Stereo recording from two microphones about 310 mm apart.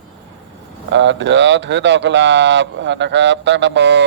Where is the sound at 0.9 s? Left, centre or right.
Right.